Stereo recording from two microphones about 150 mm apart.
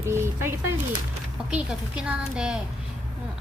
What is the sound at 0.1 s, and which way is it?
A woman's voice, 15° right (ahead or behind).